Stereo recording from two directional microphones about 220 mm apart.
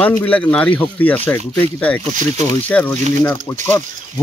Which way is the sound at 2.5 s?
10° left (ahead or behind).